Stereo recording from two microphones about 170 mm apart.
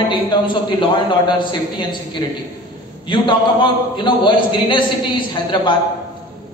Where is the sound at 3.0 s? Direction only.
30° left (ahead or behind).